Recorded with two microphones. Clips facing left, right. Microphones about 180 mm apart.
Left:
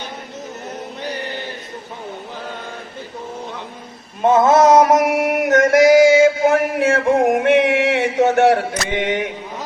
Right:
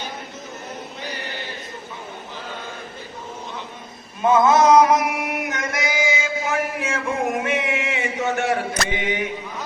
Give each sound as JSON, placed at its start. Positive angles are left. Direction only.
{"t": 4.2, "sound": "mantra", "side_deg": 40}
{"t": 9.0, "sound": "chant", "side_deg": 70}